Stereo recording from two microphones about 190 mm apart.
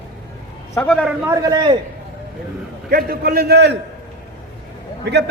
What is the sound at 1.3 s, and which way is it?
Speech, 20° right (ahead or behind).